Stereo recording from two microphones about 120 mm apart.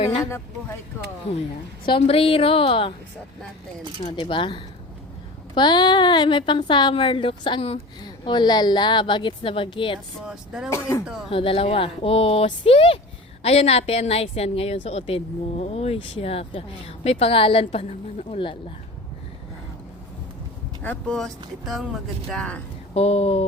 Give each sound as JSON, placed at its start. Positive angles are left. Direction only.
{"t": 0.2, "sound": "speech", "side_deg": 20}
{"t": 1.8, "sound": "speech", "side_deg": 45}
{"t": 4.2, "sound": "a woman's voice", "side_deg": 45}
{"t": 10.2, "sound": "speech", "side_deg": -5}
{"t": 10.7, "sound": "speech", "side_deg": 25}
{"t": 11.3, "sound": "a woman's voice", "side_deg": 50}
{"t": 20.8, "sound": "speech", "side_deg": 10}
{"t": 23.0, "sound": "a woman's voice", "side_deg": 60}